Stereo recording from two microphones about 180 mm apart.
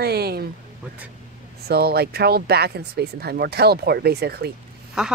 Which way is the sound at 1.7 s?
60° right (ahead or behind).